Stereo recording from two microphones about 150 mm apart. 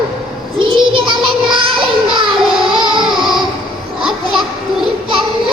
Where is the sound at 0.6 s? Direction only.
35° right (ahead or behind).